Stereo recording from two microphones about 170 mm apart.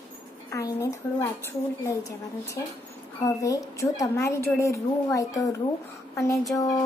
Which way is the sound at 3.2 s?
20° left (ahead or behind).